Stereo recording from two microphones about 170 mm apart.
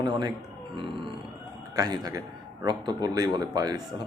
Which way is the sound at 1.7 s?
20° right (ahead or behind).